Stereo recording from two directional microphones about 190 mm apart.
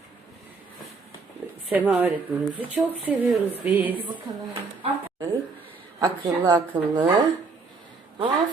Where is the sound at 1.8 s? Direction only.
10° right (ahead or behind).